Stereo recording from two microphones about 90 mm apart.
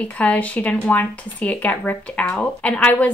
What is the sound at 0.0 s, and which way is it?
A woman's voice, 15° left (ahead or behind).